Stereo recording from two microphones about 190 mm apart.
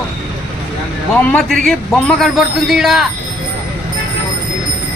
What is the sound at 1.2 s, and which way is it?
Speech, 5° left (ahead or behind).